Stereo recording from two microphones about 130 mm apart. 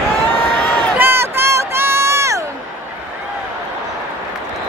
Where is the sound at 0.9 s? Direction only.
15° right (ahead or behind).